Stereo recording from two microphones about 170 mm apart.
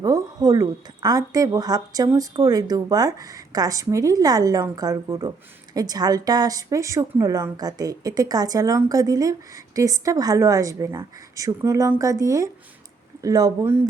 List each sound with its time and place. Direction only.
0.0 s a woman's voice: 20° right (ahead or behind)